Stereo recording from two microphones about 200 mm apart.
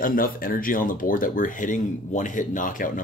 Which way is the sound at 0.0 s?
45° left (ahead or behind).